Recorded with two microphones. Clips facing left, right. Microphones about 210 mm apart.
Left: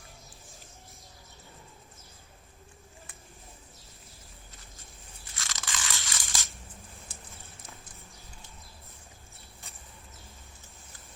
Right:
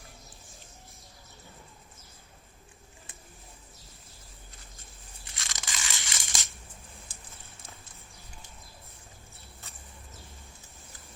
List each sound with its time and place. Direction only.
5.4 s crushing: 15° right (ahead or behind)